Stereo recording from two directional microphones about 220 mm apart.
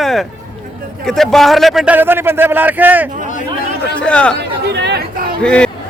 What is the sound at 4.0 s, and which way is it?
Speech, 5° left (ahead or behind).